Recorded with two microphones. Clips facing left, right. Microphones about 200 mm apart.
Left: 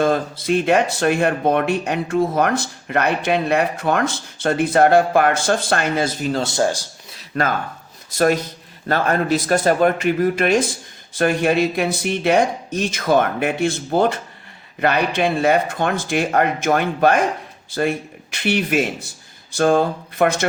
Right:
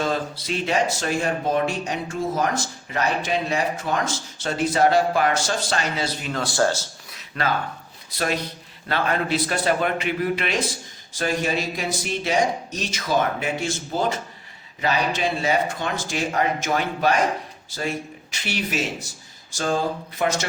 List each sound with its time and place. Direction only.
0.0 s speech: 50° left (ahead or behind)
6.3 s speech: 20° left (ahead or behind)
7.3 s a man's voice: 45° left (ahead or behind)